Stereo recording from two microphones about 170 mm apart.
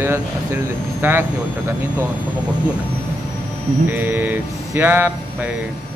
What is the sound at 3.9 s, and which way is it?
Speech, 10° right (ahead or behind).